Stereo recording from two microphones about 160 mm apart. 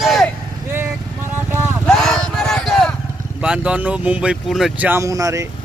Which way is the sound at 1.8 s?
5° left (ahead or behind).